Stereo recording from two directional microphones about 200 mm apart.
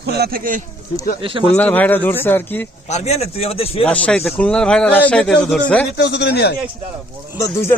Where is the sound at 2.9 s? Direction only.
30° left (ahead or behind).